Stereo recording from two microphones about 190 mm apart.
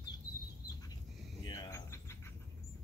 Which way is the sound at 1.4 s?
25° left (ahead or behind).